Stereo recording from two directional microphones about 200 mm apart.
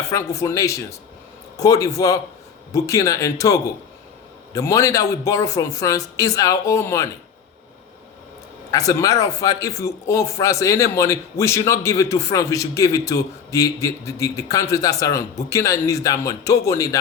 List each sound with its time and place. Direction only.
0.1 s a man's voice: 15° left (ahead or behind)
8.7 s a man's voice: 15° left (ahead or behind)